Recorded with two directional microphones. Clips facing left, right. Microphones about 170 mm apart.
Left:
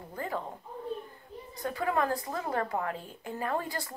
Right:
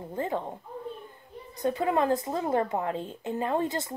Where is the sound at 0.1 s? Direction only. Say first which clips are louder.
Right 5 dB; 25° right (ahead or behind).